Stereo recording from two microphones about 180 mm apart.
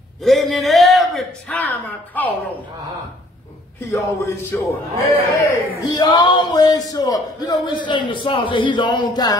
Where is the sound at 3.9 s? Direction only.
15° left (ahead or behind).